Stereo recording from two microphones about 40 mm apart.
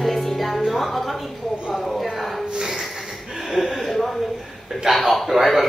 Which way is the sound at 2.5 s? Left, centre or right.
Centre.